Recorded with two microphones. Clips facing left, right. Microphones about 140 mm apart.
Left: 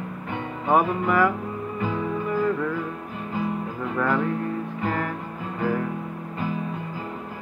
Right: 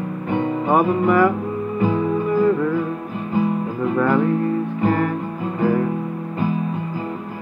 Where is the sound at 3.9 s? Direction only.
10° right (ahead or behind).